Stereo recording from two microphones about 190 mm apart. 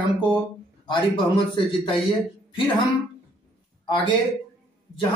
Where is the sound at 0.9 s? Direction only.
25° left (ahead or behind).